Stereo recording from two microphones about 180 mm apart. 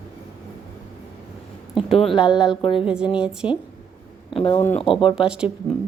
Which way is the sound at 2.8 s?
5° right (ahead or behind).